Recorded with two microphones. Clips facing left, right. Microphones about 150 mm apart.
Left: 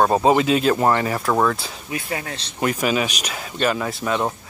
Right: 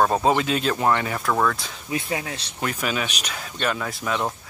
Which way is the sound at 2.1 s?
15° right (ahead or behind).